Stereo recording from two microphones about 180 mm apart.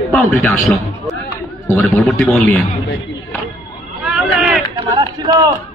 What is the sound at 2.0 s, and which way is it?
Speech, centre (ahead or behind).